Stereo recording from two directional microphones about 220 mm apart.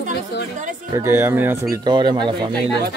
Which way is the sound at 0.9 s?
10° right (ahead or behind).